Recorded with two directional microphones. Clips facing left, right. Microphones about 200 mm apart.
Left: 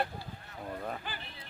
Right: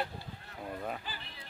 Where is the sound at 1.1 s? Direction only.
55° left (ahead or behind).